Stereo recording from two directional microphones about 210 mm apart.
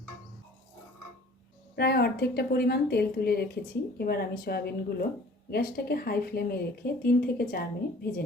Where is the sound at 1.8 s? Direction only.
50° left (ahead or behind).